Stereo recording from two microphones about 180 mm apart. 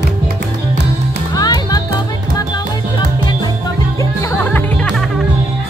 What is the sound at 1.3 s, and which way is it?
Music, 20° left (ahead or behind).